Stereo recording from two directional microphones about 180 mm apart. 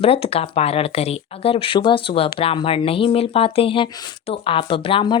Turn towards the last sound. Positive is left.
turn(degrees=30)  # may be behind; listen again after turning